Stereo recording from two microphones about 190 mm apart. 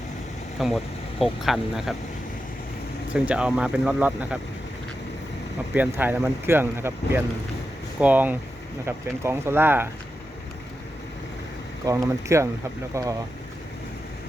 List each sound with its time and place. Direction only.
0.6 s speech: centre (ahead or behind)
3.1 s speech: 5° right (ahead or behind)
5.7 s speech: 10° right (ahead or behind)
11.9 s speech: 15° right (ahead or behind)